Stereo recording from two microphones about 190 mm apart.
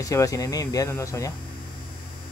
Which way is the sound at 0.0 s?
15° left (ahead or behind).